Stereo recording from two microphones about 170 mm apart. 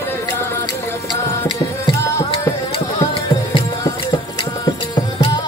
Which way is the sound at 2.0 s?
15° left (ahead or behind).